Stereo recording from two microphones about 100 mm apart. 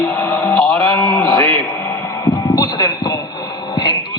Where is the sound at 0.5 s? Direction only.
5° left (ahead or behind).